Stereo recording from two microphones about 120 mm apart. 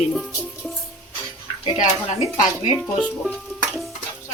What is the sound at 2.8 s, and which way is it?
Music, 5° left (ahead or behind).